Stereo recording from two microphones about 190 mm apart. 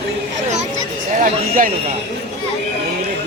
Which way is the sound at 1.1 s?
45° right (ahead or behind).